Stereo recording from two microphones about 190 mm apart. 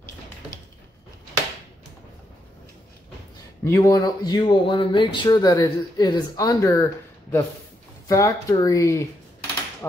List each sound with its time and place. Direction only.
3.6 s speech: 15° left (ahead or behind)